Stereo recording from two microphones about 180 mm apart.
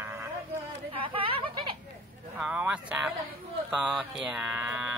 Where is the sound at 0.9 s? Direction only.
30° right (ahead or behind).